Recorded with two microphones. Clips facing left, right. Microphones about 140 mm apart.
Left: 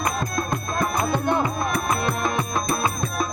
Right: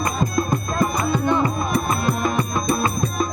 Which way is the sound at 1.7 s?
Centre (ahead or behind).